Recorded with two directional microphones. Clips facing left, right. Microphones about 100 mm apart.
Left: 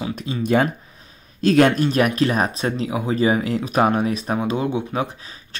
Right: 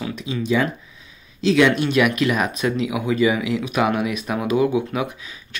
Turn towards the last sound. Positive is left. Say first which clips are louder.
# right 3 dB
turn(degrees=30)  # may be behind; listen again after turning